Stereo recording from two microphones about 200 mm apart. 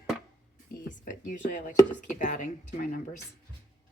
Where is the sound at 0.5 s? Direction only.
40° left (ahead or behind).